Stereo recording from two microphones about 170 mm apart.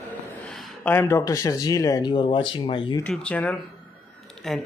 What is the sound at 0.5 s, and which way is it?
Speech, 5° left (ahead or behind).